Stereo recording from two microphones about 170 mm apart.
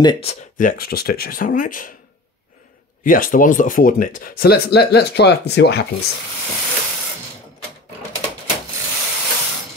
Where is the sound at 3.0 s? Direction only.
55° left (ahead or behind); by 5.8 s 80° left.